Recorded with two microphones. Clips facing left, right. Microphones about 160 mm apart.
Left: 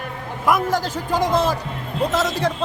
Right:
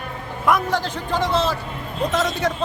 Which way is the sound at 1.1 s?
10° left (ahead or behind).